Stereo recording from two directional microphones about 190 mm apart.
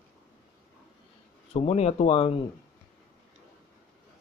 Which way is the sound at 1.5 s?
35° left (ahead or behind).